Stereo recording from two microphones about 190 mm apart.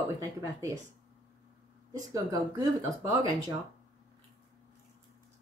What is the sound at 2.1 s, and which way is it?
Speech, 20° right (ahead or behind).